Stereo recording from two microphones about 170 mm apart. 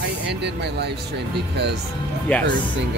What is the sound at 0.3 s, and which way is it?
Speech, 85° right.